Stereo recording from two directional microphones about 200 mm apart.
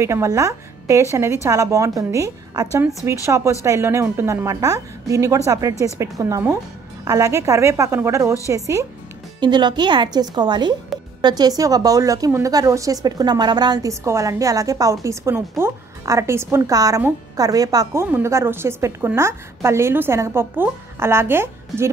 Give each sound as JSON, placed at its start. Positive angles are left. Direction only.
{"t": 0.0, "sound": "a woman's voice", "side_deg": -15}